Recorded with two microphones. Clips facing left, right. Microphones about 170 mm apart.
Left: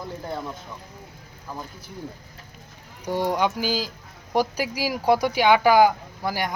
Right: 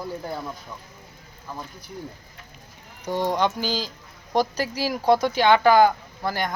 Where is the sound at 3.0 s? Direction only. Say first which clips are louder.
Even; 10° left (ahead or behind).